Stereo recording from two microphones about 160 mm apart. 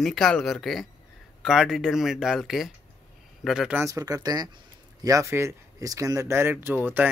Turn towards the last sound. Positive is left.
turn(degrees=-10)  # may be behind; listen again after turning